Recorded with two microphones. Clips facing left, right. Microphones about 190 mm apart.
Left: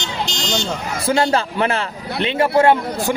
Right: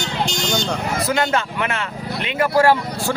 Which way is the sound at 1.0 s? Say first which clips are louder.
Left 5 dB; 30° left (ahead or behind).